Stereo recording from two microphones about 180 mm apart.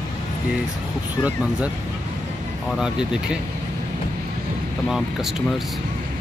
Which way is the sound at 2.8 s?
5° right (ahead or behind).